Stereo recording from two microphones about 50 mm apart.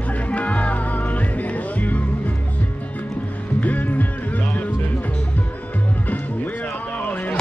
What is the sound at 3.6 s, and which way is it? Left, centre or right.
Music, left.